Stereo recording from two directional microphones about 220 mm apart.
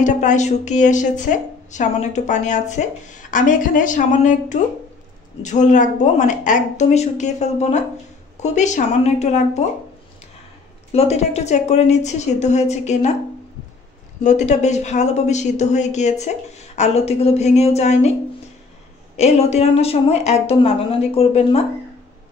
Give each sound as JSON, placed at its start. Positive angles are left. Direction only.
{"t": 0.0, "sound": "a woman's voice", "side_deg": 35}
{"t": 10.9, "sound": "a woman's voice", "side_deg": 30}
{"t": 14.2, "sound": "a woman's voice", "side_deg": 30}
{"t": 19.1, "sound": "a woman's voice", "side_deg": 30}